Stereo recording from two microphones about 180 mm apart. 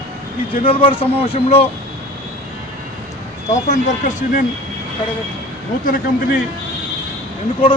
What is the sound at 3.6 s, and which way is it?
Speech, 45° left (ahead or behind).